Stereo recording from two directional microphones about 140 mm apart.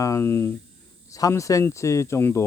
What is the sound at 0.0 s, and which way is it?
Speech, 20° left (ahead or behind).